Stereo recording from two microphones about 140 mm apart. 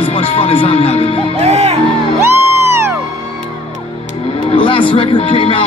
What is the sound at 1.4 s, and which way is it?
Music, 50° right (ahead or behind).